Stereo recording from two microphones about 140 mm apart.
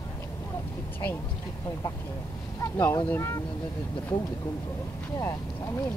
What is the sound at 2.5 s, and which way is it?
Speech, 20° left (ahead or behind).